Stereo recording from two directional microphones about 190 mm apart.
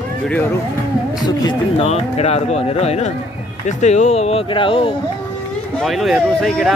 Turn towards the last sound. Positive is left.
turn(degrees=0)  # may be behind; listen again after turning